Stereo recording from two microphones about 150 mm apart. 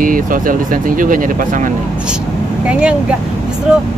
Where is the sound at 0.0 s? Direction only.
65° right (ahead or behind).